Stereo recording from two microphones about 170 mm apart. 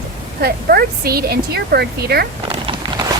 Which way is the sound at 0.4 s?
65° right (ahead or behind).